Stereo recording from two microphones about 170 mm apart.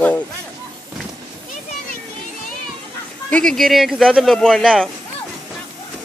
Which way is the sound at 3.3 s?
5° left (ahead or behind).